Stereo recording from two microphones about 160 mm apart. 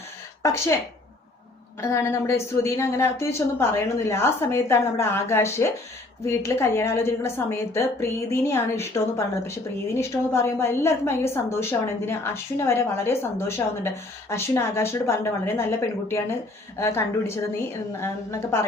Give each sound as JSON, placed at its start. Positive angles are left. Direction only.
{"t": 0.4, "sound": "a woman's voice", "side_deg": 15}
{"t": 1.8, "sound": "a woman's voice", "side_deg": 15}